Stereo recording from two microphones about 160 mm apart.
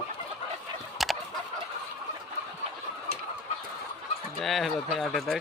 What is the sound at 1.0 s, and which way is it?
Chicken, centre (ahead or behind).